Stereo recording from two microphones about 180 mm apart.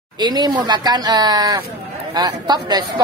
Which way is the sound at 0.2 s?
25° right (ahead or behind).